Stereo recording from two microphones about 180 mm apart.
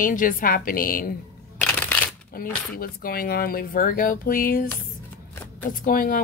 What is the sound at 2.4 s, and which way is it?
Speech, 55° left (ahead or behind).